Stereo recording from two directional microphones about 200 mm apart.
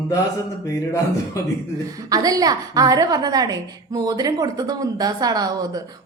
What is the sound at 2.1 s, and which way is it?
A woman's voice, 20° right (ahead or behind).